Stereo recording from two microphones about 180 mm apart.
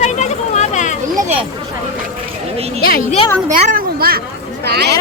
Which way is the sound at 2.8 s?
55° left (ahead or behind).